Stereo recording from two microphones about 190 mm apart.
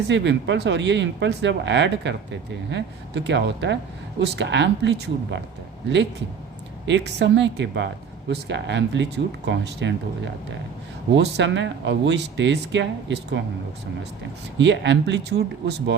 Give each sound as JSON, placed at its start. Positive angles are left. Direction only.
{"t": 0.1, "sound": "speech", "side_deg": -70}
{"t": 6.8, "sound": "speech", "side_deg": -70}
{"t": 11.1, "sound": "speech", "side_deg": -65}
{"t": 14.6, "sound": "speech", "side_deg": -70}